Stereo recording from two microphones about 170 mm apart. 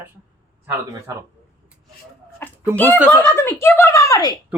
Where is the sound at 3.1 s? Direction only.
15° left (ahead or behind).